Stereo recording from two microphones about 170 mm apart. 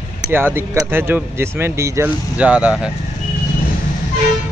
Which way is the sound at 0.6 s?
10° right (ahead or behind).